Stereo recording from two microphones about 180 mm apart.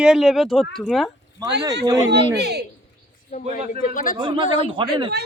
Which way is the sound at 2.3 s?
65° right (ahead or behind).